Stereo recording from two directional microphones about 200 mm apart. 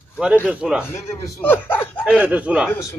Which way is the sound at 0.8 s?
10° left (ahead or behind).